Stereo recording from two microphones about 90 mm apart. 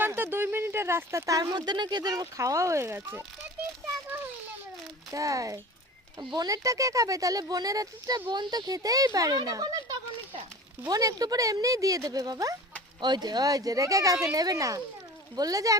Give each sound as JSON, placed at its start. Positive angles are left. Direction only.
{"t": 0.0, "sound": "a sound", "side_deg": -25}
{"t": 1.5, "sound": "speech", "side_deg": -55}
{"t": 5.1, "sound": "speech", "side_deg": -40}
{"t": 8.3, "sound": "speech", "side_deg": -55}